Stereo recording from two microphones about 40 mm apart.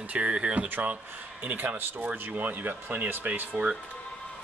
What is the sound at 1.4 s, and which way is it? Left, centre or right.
Speech, right.